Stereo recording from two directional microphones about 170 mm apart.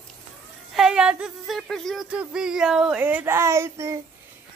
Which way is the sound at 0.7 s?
5° right (ahead or behind).